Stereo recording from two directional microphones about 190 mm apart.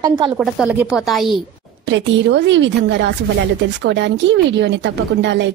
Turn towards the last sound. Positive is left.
turn(degrees=-65)  # may be behind; listen again after turning